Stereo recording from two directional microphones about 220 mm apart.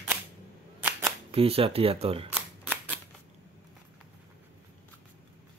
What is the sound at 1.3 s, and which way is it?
Speech, 25° right (ahead or behind).